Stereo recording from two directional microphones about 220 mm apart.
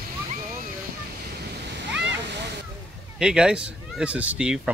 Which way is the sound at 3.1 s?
5° right (ahead or behind).